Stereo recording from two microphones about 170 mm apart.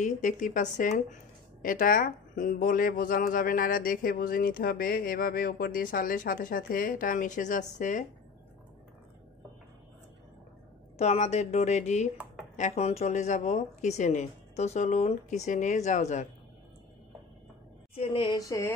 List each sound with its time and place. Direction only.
0.0 s speech: 50° left (ahead or behind)
11.0 s speech: 40° left (ahead or behind)
17.9 s speech: 30° left (ahead or behind)
18.4 s mantra: 20° left (ahead or behind)